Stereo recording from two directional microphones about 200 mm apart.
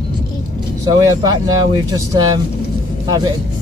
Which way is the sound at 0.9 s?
20° right (ahead or behind).